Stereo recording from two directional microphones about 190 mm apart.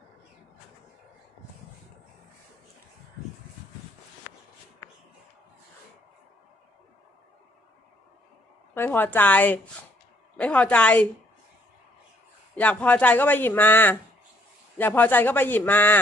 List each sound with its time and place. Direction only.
8.7 s speech: 10° left (ahead or behind)
12.5 s speech: 10° left (ahead or behind)